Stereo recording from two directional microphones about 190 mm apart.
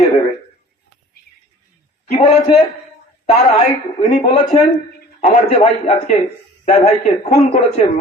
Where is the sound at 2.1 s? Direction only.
35° left (ahead or behind).